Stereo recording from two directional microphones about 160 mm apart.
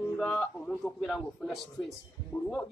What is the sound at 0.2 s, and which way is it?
A man's voice, centre (ahead or behind).